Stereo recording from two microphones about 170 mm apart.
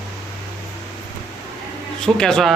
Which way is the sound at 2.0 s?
5° left (ahead or behind).